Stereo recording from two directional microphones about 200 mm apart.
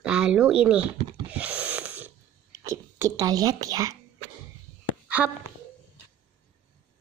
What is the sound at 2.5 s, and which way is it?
Speech, 15° right (ahead or behind).